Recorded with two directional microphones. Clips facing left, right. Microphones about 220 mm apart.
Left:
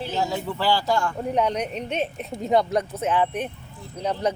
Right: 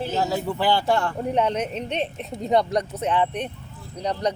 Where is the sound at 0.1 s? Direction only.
5° right (ahead or behind); by 1.1 s 30° right (ahead or behind).